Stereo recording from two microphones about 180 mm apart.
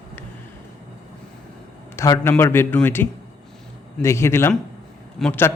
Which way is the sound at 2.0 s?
15° left (ahead or behind).